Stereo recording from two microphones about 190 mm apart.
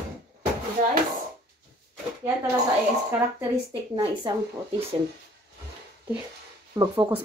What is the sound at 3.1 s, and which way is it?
Speech, 10° right (ahead or behind).